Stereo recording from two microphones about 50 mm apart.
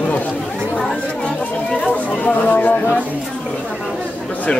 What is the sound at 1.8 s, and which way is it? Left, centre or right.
Chatter, left.